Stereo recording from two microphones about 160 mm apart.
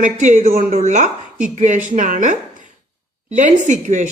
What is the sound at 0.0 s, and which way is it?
Speech, 50° right (ahead or behind).